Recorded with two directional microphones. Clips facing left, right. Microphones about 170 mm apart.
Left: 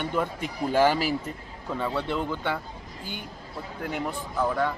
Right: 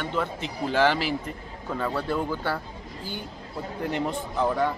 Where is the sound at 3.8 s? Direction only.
Centre (ahead or behind).